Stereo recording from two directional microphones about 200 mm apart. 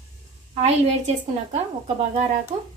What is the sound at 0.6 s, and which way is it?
A woman's voice, 35° right (ahead or behind).